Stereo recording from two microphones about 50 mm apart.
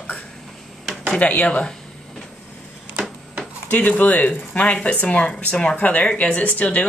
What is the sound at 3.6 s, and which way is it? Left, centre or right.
Speech, left.